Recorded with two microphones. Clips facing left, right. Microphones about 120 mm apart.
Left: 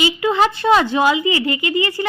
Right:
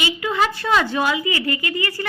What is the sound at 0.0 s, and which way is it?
A woman's voice, 25° left (ahead or behind).